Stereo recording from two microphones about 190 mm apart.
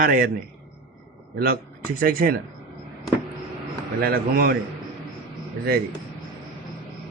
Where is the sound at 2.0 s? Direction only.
50° right (ahead or behind).